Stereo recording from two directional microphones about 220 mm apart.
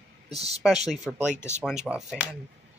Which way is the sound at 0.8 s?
5° right (ahead or behind).